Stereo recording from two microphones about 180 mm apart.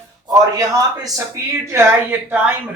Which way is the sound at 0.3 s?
20° right (ahead or behind).